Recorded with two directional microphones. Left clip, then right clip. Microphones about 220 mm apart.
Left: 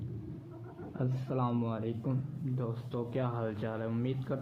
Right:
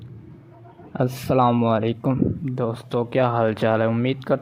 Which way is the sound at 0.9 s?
50° right (ahead or behind).